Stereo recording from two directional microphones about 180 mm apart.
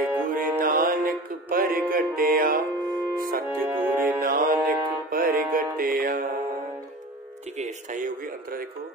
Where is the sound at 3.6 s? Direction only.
10° right (ahead or behind).